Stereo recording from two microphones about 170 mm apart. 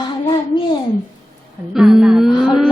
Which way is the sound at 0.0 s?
25° left (ahead or behind).